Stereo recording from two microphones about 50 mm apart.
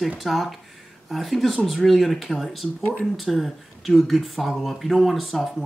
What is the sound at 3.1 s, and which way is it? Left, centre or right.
A woman's voice, centre.